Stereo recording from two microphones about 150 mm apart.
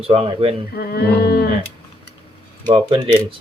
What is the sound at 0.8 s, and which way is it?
Speech, 90° left.